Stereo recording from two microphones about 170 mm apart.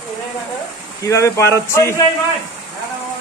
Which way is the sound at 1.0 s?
20° left (ahead or behind).